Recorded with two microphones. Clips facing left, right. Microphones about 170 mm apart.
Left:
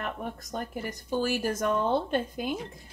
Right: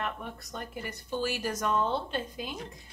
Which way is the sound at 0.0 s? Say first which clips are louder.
Left 2 dB; 45° left (ahead or behind).